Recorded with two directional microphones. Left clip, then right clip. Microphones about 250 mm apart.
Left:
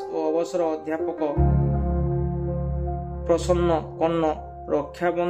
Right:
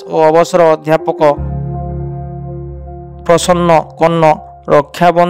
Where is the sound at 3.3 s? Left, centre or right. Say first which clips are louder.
Right 12 dB; right.